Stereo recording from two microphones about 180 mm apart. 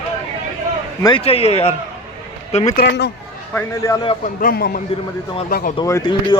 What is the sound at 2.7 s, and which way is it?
Speech, 70° left (ahead or behind).